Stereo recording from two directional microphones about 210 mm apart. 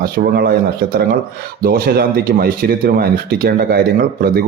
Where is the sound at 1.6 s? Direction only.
45° right (ahead or behind).